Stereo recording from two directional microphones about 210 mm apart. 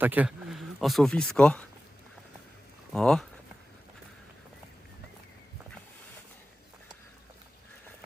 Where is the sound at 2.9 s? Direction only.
Centre (ahead or behind).